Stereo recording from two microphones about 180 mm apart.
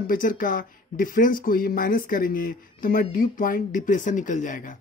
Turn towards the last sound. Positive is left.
turn(degrees=45)  # may be behind; listen again after turning